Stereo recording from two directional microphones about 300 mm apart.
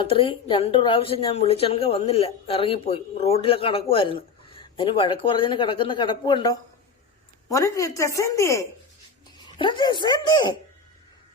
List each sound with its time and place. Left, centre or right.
0.0 s speech: centre